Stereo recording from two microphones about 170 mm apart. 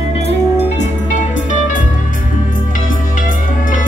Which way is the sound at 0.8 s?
45° left (ahead or behind).